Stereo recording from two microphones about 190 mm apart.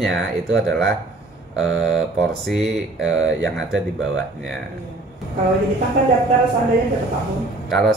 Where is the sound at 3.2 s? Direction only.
80° right.